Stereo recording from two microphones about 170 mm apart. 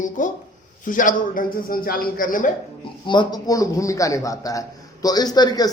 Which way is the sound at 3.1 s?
25° left (ahead or behind).